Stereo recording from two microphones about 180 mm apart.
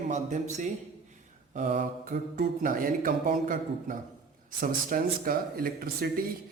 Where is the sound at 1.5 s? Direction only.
45° right (ahead or behind).